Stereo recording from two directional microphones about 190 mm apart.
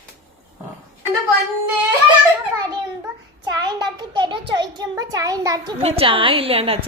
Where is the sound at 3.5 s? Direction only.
20° right (ahead or behind).